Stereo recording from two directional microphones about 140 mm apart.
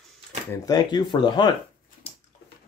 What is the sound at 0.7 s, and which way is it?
Speech, 30° left (ahead or behind).